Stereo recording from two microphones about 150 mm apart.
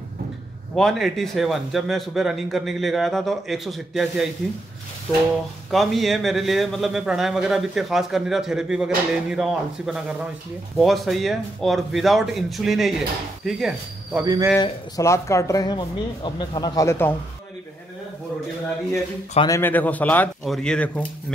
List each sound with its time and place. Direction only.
0.7 s a man's voice: centre (ahead or behind)
5.7 s a man's voice: centre (ahead or behind)
14.2 s a man's voice: 25° right (ahead or behind)
14.6 s speech: 20° left (ahead or behind)
19.4 s a man's voice: 15° left (ahead or behind)